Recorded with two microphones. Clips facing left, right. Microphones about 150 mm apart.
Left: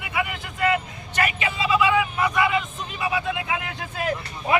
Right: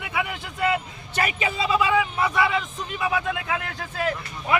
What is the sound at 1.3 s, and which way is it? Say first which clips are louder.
Speech: even; 40° right (ahead or behind).